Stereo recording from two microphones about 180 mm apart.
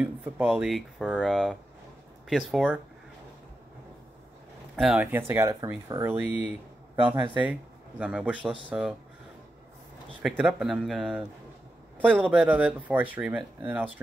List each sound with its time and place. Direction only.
0.0 s speech: 5° right (ahead or behind)
4.7 s speech: 5° right (ahead or behind)
7.0 s speech: 30° right (ahead or behind)
8.0 s speech: 5° right (ahead or behind)
10.2 s a man's voice: centre (ahead or behind)
12.3 s speech: 10° right (ahead or behind)